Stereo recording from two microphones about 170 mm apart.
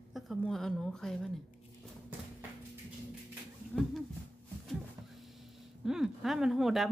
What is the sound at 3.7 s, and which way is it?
Speech, centre (ahead or behind).